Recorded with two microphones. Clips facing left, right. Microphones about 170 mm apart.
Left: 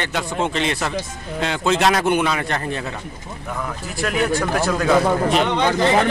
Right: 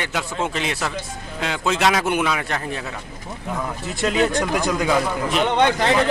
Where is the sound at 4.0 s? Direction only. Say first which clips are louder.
Right 1 dB; 20° right (ahead or behind).